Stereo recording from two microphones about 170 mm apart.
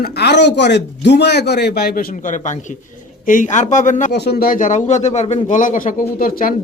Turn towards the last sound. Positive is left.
turn(degrees=60)  # may be behind; listen again after turning